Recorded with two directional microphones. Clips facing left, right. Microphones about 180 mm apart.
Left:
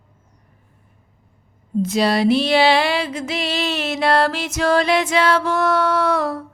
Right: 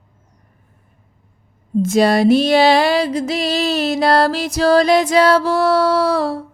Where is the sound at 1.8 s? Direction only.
50° right (ahead or behind).